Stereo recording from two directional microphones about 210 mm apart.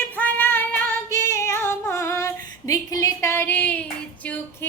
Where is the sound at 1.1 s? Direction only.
15° left (ahead or behind).